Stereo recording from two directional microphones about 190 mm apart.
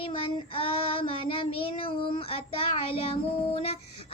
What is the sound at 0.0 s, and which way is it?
Child singing, 30° left (ahead or behind).